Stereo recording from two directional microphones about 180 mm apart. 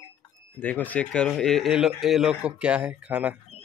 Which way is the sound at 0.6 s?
10° left (ahead or behind).